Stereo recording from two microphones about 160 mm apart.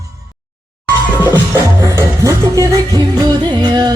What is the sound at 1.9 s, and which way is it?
Music, 20° right (ahead or behind).